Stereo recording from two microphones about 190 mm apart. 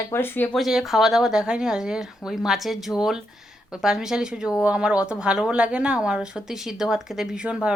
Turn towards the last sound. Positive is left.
turn(degrees=-5)  # may be behind; listen again after turning